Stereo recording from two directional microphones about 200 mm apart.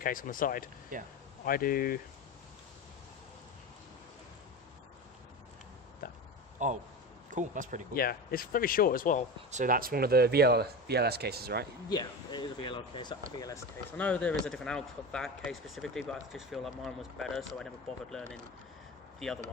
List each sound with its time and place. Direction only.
0.0 s speech: 45° left (ahead or behind)
0.9 s speech: 40° right (ahead or behind)
1.5 s speech: 45° left (ahead or behind)
6.6 s speech: 40° right (ahead or behind)
7.9 s speech: 50° left (ahead or behind)
9.5 s speech: 40° right (ahead or behind)
11.9 s speech: 20° left (ahead or behind); by 19.4 s centre (ahead or behind)